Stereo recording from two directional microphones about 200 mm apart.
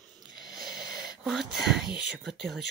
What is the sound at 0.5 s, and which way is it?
Wheeze, 5° right (ahead or behind).